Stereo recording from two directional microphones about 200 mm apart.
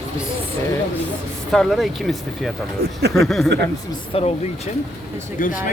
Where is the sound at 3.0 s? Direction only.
55° right (ahead or behind).